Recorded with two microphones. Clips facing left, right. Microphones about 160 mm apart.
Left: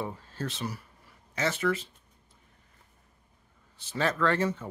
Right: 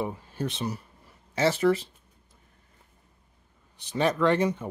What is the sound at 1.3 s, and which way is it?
Speech, 35° right (ahead or behind).